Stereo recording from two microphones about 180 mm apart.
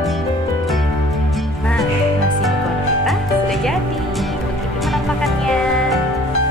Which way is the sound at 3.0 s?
Centre (ahead or behind).